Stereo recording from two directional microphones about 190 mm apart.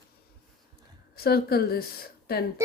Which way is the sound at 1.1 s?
55° left (ahead or behind).